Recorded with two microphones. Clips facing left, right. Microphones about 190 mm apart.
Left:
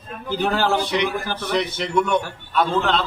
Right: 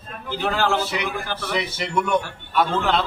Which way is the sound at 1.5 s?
5° right (ahead or behind).